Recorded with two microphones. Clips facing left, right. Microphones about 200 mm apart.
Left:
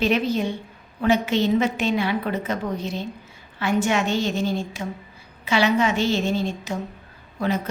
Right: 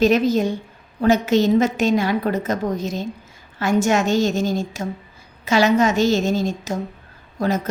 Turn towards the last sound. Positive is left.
turn(degrees=-45)  # may be behind; listen again after turning